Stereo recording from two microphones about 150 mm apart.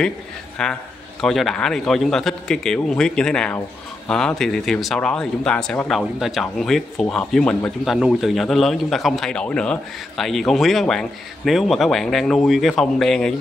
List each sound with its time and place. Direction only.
0.6 s speech: 5° left (ahead or behind)